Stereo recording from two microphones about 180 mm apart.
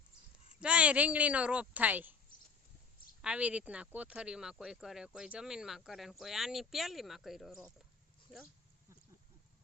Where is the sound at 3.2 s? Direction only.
5° right (ahead or behind).